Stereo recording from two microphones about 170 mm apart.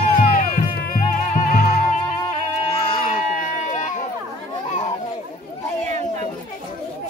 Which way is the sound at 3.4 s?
45° left (ahead or behind).